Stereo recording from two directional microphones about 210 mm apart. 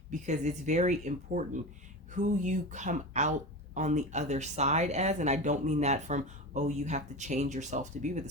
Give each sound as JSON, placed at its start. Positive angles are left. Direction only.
{"t": 0.1, "sound": "speech", "side_deg": -35}